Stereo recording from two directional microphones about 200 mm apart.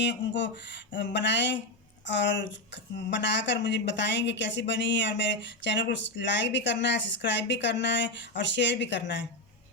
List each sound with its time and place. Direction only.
0.0 s a woman's voice: 60° left (ahead or behind)